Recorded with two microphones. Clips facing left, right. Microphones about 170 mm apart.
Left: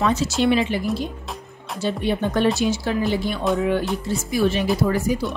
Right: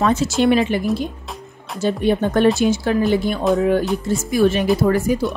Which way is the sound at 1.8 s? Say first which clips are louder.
Right 5 dB; 50° right (ahead or behind).